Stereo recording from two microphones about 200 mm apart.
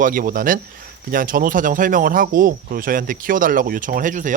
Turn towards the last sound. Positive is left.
turn(degrees=-40)  # may be behind; listen again after turning